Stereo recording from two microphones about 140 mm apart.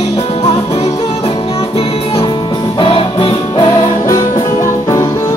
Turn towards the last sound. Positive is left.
turn(degrees=35)  # may be behind; listen again after turning